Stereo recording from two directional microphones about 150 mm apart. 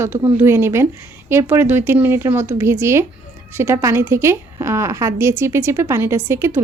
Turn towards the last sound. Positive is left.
turn(degrees=-15)  # may be behind; listen again after turning